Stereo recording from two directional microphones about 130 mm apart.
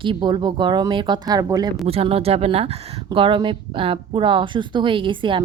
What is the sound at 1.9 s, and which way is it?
Speech, 50° right (ahead or behind).